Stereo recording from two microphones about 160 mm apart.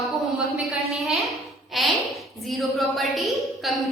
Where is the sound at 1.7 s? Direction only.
Centre (ahead or behind).